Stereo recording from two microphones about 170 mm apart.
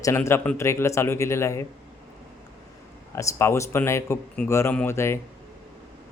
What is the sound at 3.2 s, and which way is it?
Speech, 15° left (ahead or behind).